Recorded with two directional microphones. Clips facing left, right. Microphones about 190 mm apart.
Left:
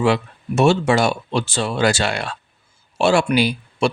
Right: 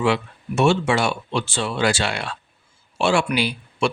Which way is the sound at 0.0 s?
40° left (ahead or behind).